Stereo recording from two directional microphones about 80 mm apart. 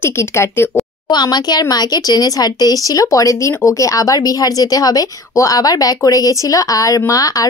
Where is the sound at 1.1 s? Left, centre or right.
Left.